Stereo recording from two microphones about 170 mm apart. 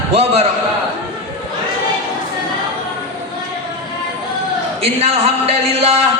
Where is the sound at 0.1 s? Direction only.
35° right (ahead or behind).